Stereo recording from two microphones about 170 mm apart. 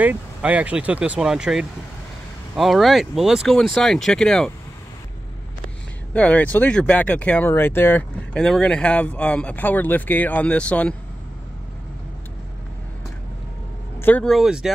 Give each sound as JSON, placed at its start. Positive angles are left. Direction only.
{"t": 0.0, "sound": "speech", "side_deg": -10}
{"t": 6.1, "sound": "speech", "side_deg": 10}
{"t": 13.9, "sound": "speech", "side_deg": 10}